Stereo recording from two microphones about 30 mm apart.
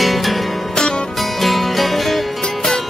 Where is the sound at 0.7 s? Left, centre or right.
Left.